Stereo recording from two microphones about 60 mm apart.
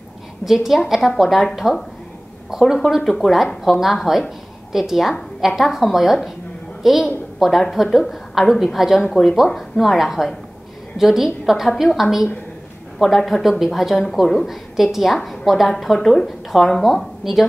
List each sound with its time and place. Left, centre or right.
0.5 s a woman's voice: centre